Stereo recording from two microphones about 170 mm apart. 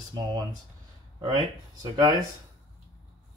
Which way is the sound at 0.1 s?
25° right (ahead or behind).